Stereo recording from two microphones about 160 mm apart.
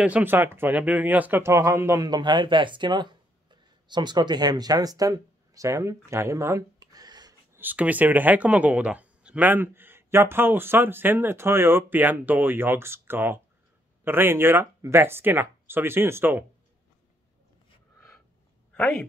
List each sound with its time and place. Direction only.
0.0 s speech: 10° right (ahead or behind)
2.0 s speech: 25° right (ahead or behind)
7.5 s speech: 10° right (ahead or behind)